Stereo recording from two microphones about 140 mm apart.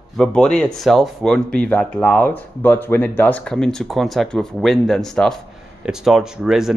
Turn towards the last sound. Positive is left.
turn(degrees=-5)  # may be behind; listen again after turning